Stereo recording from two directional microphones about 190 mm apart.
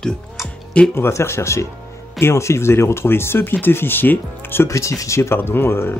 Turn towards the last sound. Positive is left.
turn(degrees=10)  # may be behind; listen again after turning